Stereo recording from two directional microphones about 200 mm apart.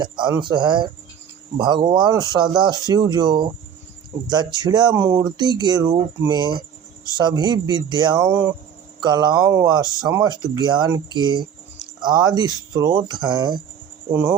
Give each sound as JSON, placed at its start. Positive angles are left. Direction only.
{"t": 0.0, "sound": "speech", "side_deg": -20}